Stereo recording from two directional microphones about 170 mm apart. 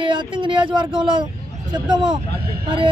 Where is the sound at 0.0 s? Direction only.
30° right (ahead or behind).